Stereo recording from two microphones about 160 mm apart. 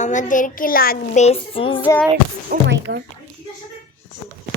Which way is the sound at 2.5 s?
90° right.